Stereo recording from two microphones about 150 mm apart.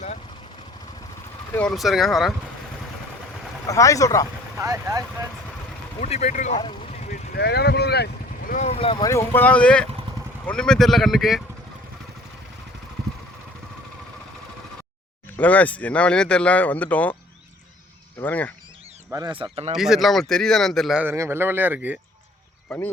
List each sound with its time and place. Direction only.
1.5 s a man's voice: 5° left (ahead or behind)
3.7 s speech: 20° left (ahead or behind)
4.5 s speech: 20° right (ahead or behind)
6.0 s speech: 45° left (ahead or behind)
7.0 s vehicle: 75° left (ahead or behind)
8.5 s speech: 45° left (ahead or behind)
9.0 s a man's voice: 15° left (ahead or behind); by 11.4 s centre (ahead or behind)
15.4 s speech: 10° left (ahead or behind)
18.2 s speech: 10° left (ahead or behind)
19.4 s speech: 40° right (ahead or behind)
19.7 s a man's voice: 5° right (ahead or behind)
21.0 s speech: 15° right (ahead or behind)
22.7 s a man's voice: 5° left (ahead or behind)